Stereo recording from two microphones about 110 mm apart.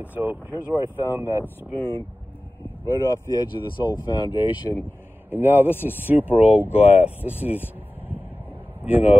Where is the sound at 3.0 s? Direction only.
30° left (ahead or behind).